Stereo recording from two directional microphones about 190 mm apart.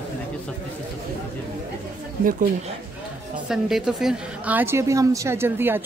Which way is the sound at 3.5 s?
Centre (ahead or behind).